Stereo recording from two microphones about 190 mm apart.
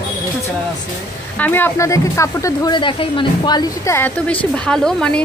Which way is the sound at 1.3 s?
10° left (ahead or behind).